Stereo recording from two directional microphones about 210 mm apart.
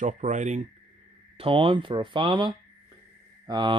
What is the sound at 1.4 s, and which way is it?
Speech, 25° right (ahead or behind).